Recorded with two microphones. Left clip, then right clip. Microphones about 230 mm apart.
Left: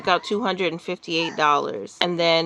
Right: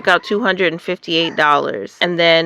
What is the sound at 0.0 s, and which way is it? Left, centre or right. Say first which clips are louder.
Speech: right 7 dB; centre.